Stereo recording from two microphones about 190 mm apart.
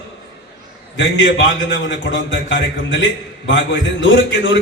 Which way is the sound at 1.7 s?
75° left (ahead or behind).